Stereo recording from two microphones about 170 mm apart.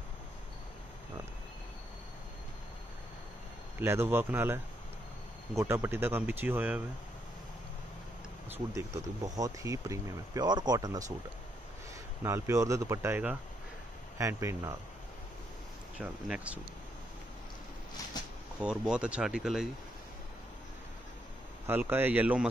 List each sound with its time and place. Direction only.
3.8 s speech: 15° right (ahead or behind)
8.5 s speech: 20° right (ahead or behind)
12.2 s speech: 15° right (ahead or behind)
16.0 s speech: 5° right (ahead or behind)
18.6 s speech: 5° right (ahead or behind)
21.6 s speech: 10° right (ahead or behind)